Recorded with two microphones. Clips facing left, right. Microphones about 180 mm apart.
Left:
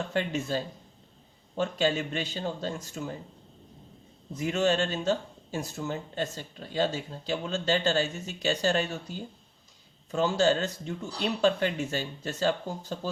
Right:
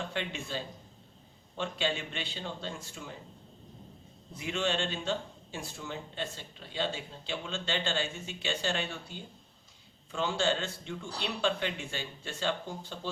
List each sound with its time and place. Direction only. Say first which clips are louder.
0.1 s speech: left 7 dB; 40° left (ahead or behind)
4.4 s speech: left 6 dB; 40° left (ahead or behind)